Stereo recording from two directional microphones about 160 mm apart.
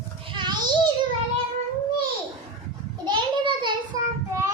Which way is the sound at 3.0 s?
30° right (ahead or behind).